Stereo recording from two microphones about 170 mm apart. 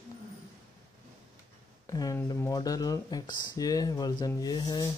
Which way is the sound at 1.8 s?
20° left (ahead or behind).